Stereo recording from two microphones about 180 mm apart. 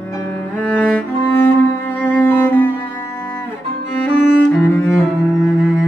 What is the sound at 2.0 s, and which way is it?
Cello, 10° left (ahead or behind).